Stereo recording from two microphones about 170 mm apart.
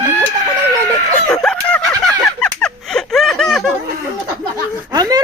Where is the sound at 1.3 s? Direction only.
5° left (ahead or behind).